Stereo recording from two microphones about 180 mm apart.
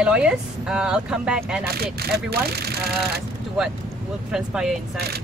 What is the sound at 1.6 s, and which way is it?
Speech, 60° right (ahead or behind).